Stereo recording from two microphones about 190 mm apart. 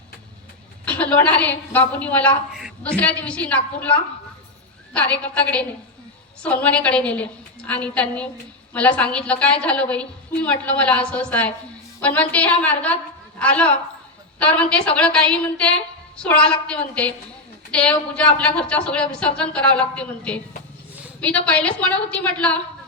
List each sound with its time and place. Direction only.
0.9 s a woman's voice: 5° left (ahead or behind)
2.5 s a sound: centre (ahead or behind)
2.8 s a woman's voice: 10° left (ahead or behind)
4.9 s a woman's voice: 5° left (ahead or behind)